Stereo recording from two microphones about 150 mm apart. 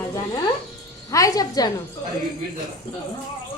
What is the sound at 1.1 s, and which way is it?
Speech, 20° left (ahead or behind).